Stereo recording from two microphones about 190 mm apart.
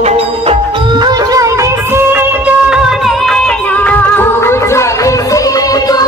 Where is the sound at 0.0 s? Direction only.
30° right (ahead or behind).